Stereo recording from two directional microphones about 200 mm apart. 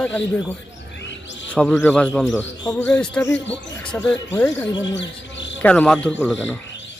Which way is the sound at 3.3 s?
65° left (ahead or behind).